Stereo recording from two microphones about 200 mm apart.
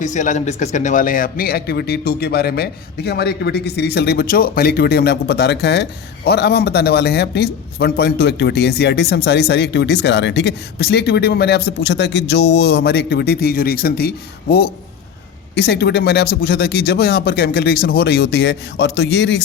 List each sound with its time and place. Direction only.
0.0 s speech: 40° left (ahead or behind)
15.5 s speech: 55° left (ahead or behind)